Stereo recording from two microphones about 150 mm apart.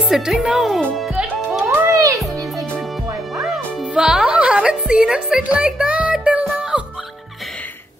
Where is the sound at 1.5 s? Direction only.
5° right (ahead or behind).